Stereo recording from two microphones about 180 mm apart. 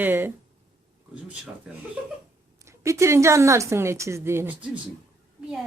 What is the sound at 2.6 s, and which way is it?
A woman's voice, 15° right (ahead or behind).